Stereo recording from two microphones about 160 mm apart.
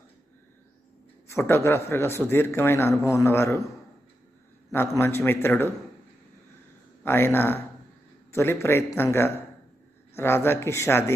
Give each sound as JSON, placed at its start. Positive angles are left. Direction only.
{"t": 1.3, "sound": "a man's voice", "side_deg": 15}
{"t": 4.6, "sound": "a man's voice", "side_deg": 15}
{"t": 7.0, "sound": "a man's voice", "side_deg": 15}